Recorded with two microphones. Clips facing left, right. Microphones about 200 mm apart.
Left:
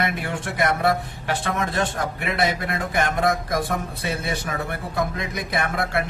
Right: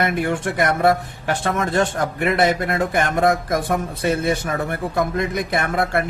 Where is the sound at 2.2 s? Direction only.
50° right (ahead or behind).